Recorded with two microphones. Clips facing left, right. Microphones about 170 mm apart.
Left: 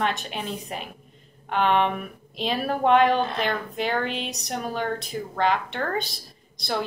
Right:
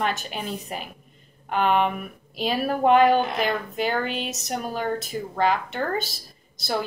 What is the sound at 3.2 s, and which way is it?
Speech, 15° right (ahead or behind).